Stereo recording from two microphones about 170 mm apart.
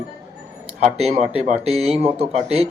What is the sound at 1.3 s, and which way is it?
Speech, 35° right (ahead or behind).